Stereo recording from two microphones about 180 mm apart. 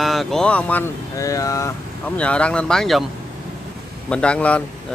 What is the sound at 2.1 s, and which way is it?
Speech, 5° left (ahead or behind).